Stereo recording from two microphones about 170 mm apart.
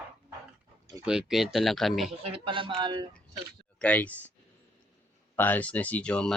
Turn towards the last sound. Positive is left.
turn(degrees=5)  # may be behind; listen again after turning